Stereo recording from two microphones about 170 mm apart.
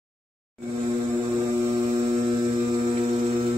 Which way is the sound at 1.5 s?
40° right (ahead or behind).